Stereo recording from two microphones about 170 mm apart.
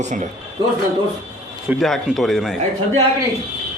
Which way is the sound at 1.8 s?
Centre (ahead or behind).